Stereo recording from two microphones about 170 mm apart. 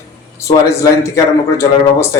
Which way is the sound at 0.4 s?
20° left (ahead or behind).